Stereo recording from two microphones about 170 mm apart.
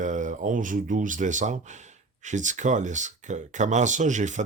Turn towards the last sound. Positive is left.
turn(degrees=-45)  # may be behind; listen again after turning